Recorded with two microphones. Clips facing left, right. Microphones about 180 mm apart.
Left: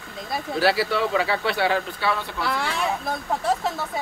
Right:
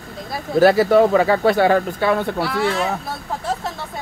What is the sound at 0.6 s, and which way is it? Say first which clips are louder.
Speech: right 10 dB; 45° right (ahead or behind).